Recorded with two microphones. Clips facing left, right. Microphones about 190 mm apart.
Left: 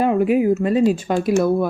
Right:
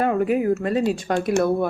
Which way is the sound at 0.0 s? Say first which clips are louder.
Left 4 dB; 10° left (ahead or behind).